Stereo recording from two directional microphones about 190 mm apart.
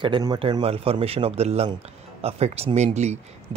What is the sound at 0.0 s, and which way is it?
Speech, 25° right (ahead or behind).